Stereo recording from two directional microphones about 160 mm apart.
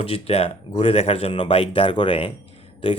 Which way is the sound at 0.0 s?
40° left (ahead or behind).